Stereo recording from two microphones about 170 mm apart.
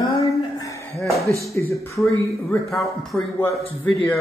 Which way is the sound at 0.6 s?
20° left (ahead or behind).